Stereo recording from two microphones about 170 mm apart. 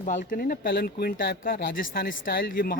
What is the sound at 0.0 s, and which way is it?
Speech, 50° left (ahead or behind).